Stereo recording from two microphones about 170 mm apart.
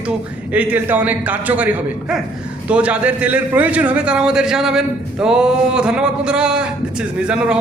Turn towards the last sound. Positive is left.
turn(degrees=-5)  # may be behind; listen again after turning